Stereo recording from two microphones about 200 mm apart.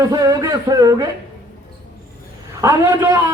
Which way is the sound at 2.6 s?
15° right (ahead or behind).